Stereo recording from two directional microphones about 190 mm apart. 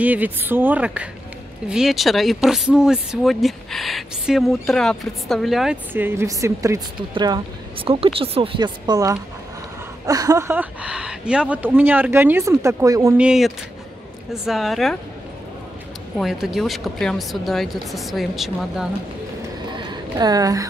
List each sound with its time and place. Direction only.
0.0 s speech: 10° right (ahead or behind)
13.2 s speech: 5° right (ahead or behind)
16.2 s speech: centre (ahead or behind)
19.7 s a sound: 25° right (ahead or behind)